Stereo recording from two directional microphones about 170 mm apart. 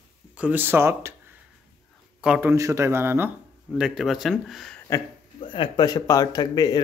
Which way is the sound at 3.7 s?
5° right (ahead or behind).